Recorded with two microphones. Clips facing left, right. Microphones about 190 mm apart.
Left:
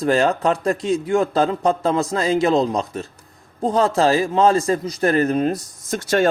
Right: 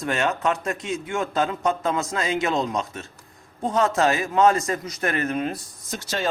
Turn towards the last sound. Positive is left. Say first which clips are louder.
# left 9 dB
turn(degrees=50)  # may be behind; listen again after turning